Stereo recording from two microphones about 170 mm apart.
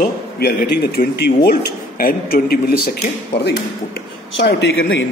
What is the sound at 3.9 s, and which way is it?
Speech, 85° left.